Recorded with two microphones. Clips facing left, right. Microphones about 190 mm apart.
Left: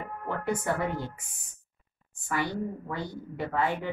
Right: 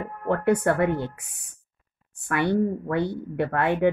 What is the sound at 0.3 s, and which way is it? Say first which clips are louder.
Speech: right 9 dB; 65° right (ahead or behind).